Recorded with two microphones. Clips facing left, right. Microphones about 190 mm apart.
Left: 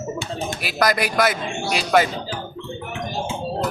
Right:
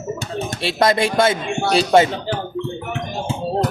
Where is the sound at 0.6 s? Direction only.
25° right (ahead or behind).